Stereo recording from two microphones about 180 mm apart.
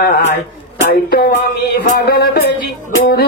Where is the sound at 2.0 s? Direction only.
60° left (ahead or behind).